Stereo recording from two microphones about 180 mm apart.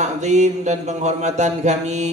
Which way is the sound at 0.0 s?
40° right (ahead or behind).